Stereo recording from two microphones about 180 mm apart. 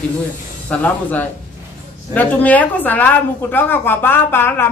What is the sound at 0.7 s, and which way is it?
Speech, 10° left (ahead or behind).